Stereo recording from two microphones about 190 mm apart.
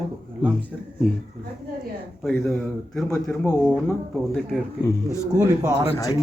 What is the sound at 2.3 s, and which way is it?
Speech, 5° left (ahead or behind).